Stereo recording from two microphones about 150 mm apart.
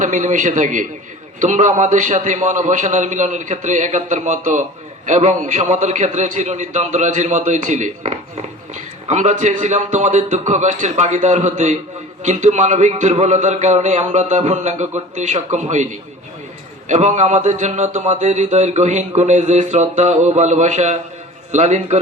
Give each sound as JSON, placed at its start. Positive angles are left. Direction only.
{"t": 0.0, "sound": "a man's voice", "side_deg": -55}